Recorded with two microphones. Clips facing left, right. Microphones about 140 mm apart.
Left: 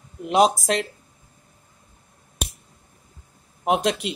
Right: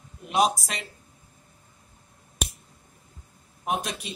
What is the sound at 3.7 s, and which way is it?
Speech, 90° left.